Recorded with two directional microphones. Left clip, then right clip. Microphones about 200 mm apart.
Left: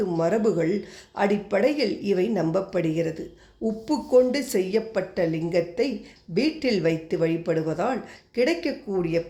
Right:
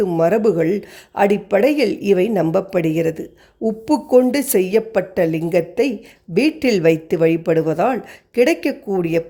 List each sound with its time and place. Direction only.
0.0 s speech: 50° right (ahead or behind)